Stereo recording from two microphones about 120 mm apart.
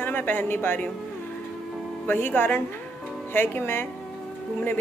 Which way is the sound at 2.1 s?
15° left (ahead or behind).